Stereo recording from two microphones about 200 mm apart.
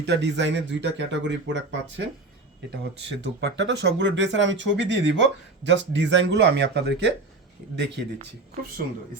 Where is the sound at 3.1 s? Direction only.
60° right (ahead or behind).